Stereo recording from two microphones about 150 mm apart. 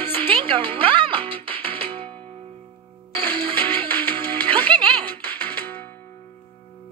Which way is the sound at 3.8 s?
10° left (ahead or behind).